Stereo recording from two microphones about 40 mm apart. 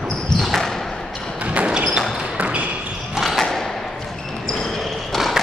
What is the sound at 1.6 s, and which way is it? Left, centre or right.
Basketball bounce, right.